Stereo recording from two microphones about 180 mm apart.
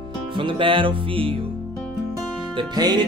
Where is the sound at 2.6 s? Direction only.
25° right (ahead or behind).